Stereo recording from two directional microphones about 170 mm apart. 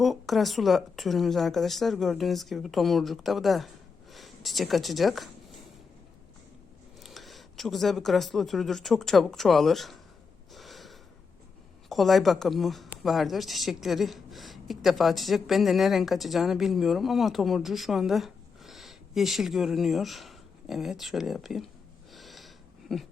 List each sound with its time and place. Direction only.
0.0 s a woman's voice: centre (ahead or behind)
7.0 s speech: centre (ahead or behind)
10.5 s snort: centre (ahead or behind)
11.9 s a woman's voice: centre (ahead or behind)
22.1 s a sound: centre (ahead or behind)